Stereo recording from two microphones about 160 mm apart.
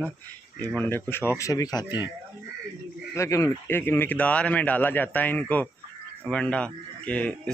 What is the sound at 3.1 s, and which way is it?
Speech, 20° left (ahead or behind).